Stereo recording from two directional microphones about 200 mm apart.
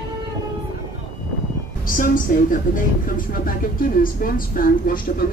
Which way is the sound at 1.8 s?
40° left (ahead or behind).